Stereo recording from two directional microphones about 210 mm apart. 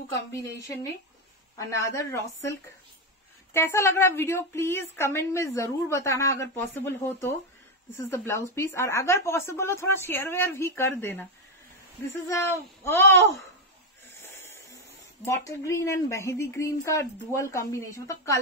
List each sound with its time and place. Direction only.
0.3 s a woman's voice: 15° left (ahead or behind)
3.5 s a woman's voice: 10° left (ahead or behind)
14.1 s a sound: 15° left (ahead or behind)
15.4 s a woman's voice: 15° left (ahead or behind)